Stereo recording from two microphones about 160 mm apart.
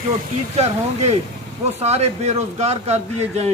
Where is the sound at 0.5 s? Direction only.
40° right (ahead or behind).